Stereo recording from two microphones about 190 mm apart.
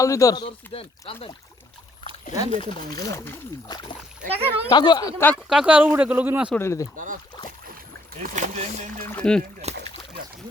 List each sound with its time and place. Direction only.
0.0 s speech: 15° left (ahead or behind)
2.3 s speech: 30° left (ahead or behind)
3.1 s speech: 15° left (ahead or behind)
4.3 s speech: 30° right (ahead or behind)
4.7 s speech: 25° left (ahead or behind)
5.3 s speech: centre (ahead or behind)
6.5 s speech: 15° left (ahead or behind)
6.9 s speech: 45° right (ahead or behind)
8.2 s speech: 40° right (ahead or behind)
9.1 s speech: 5° left (ahead or behind)
9.6 s speech: 35° right (ahead or behind)